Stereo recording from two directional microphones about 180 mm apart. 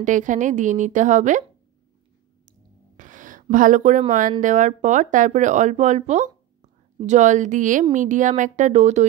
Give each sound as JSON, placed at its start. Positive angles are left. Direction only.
{"t": 0.0, "sound": "speech", "side_deg": -45}
{"t": 3.0, "sound": "a sound", "side_deg": -45}
{"t": 4.1, "sound": "speech", "side_deg": -45}